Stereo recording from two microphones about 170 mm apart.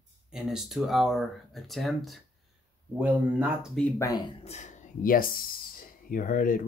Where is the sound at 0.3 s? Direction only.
5° right (ahead or behind).